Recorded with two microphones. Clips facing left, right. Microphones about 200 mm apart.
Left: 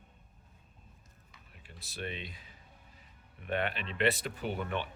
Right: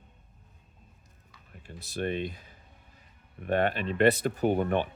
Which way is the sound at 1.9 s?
50° right (ahead or behind).